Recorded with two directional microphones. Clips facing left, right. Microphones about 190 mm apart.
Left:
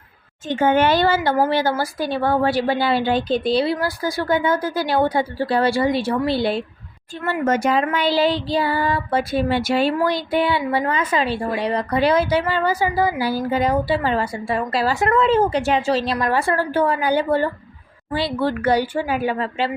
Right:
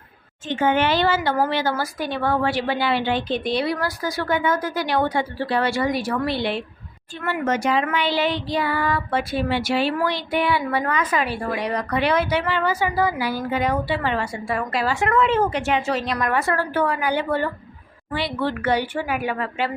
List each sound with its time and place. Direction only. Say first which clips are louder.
0.5 s speech: left 3 dB; 45° left (ahead or behind)
10.4 s speech: left 2 dB; 30° left (ahead or behind)